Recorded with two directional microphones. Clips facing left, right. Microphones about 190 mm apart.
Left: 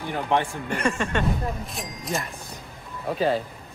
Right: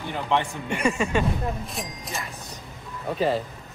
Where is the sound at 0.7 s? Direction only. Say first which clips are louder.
Right 1 dB; 5° right (ahead or behind).